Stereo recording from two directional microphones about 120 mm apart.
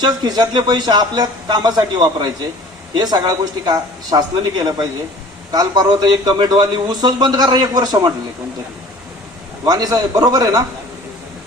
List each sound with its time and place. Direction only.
0.0 s a man's voice: 35° right (ahead or behind)
9.6 s a man's voice: 30° right (ahead or behind)